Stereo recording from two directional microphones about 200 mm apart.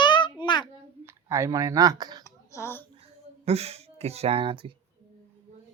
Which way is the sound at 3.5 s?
30° right (ahead or behind).